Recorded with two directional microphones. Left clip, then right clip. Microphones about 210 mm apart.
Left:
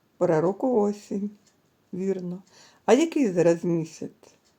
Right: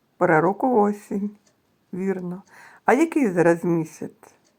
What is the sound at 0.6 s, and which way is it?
Speech, 5° right (ahead or behind).